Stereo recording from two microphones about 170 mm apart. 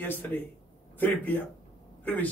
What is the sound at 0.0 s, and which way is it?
A man's voice, 10° left (ahead or behind).